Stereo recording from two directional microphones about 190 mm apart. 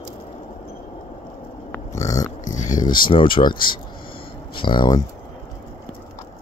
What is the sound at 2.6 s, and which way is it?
Speech, 20° left (ahead or behind).